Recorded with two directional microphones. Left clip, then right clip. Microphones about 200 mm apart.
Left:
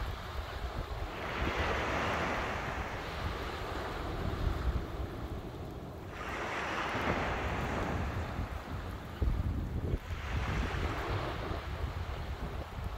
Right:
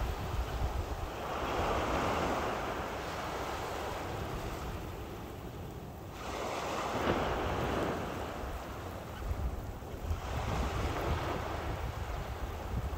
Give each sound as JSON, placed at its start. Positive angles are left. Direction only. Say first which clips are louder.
{"t": 1.5, "sound": "vehicle", "louder": "right 1 dB", "side_deg": -45}
{"t": 6.4, "sound": "waves", "louder": "even", "side_deg": -55}
{"t": 7.0, "sound": "waves", "louder": "right 1 dB", "side_deg": -45}